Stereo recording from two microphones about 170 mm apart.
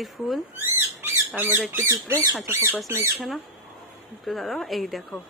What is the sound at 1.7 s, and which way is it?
Speech, 15° right (ahead or behind).